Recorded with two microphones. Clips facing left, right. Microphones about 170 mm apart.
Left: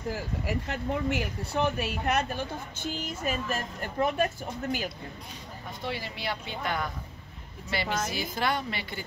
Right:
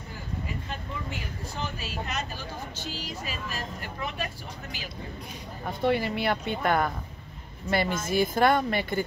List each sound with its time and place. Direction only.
0.1 s speech: 75° left (ahead or behind); by 4.3 s 50° left (ahead or behind)
5.7 s speech: 55° right (ahead or behind)